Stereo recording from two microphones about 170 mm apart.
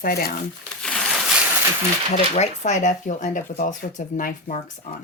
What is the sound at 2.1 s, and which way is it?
Speech, 45° left (ahead or behind).